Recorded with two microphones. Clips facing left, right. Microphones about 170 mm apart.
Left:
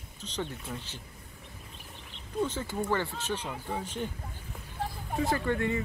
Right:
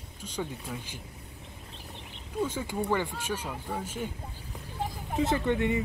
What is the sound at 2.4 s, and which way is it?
Speech, 10° right (ahead or behind).